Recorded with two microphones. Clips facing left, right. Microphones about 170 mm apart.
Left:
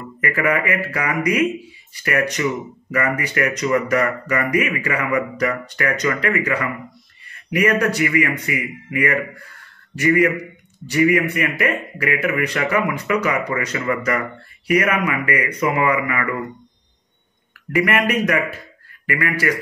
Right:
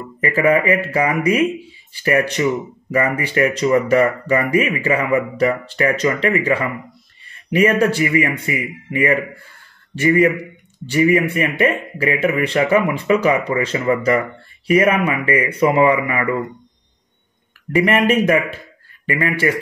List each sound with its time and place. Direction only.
0.2 s speech: 25° right (ahead or behind)
17.7 s speech: 25° right (ahead or behind)